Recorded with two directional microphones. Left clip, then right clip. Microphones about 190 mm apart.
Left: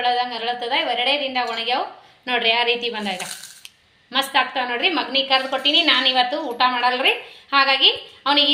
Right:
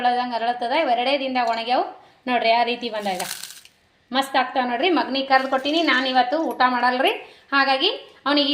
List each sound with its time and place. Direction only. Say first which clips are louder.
0.0 s a woman's voice: even; 50° right (ahead or behind)